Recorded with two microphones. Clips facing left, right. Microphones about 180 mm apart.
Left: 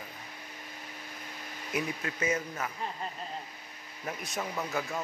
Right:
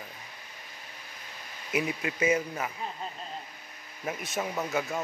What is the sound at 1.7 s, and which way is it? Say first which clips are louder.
Speech: right 4 dB; 10° right (ahead or behind).